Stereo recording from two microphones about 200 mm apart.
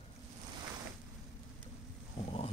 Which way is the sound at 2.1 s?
30° left (ahead or behind).